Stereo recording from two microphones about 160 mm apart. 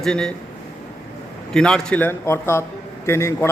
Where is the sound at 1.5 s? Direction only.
5° left (ahead or behind).